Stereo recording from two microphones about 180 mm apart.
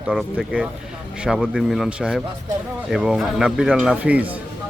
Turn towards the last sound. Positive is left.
turn(degrees=-10)  # may be behind; listen again after turning